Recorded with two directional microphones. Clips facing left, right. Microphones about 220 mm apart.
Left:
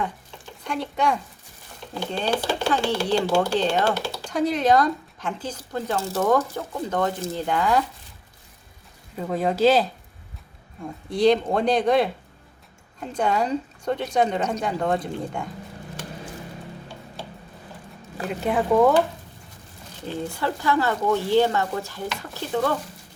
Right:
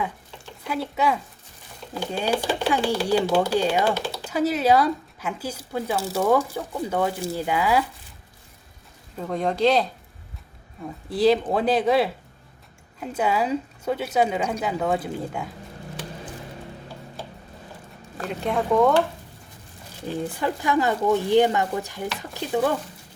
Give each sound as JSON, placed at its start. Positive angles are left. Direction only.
{"t": 0.6, "sound": "speech", "side_deg": -5}
{"t": 9.1, "sound": "speech", "side_deg": 5}
{"t": 18.2, "sound": "speech", "side_deg": 5}
{"t": 20.1, "sound": "speech", "side_deg": -15}